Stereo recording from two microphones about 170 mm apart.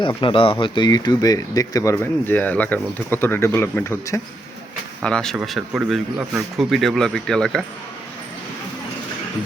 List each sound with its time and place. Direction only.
0.2 s speech: 30° left (ahead or behind); by 4.2 s 15° left (ahead or behind)
5.0 s speech: 5° left (ahead or behind)